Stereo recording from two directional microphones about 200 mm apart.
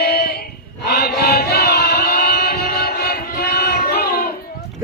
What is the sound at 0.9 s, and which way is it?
Chant, 50° left (ahead or behind).